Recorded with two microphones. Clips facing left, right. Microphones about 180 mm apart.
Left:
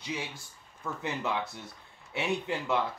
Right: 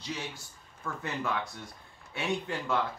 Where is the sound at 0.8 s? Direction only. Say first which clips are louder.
Left 1 dB; 20° left (ahead or behind).